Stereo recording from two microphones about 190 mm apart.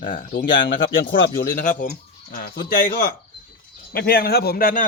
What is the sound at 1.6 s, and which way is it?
A man's voice, 40° left (ahead or behind).